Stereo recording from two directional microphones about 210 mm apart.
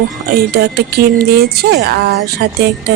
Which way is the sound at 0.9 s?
50° right (ahead or behind).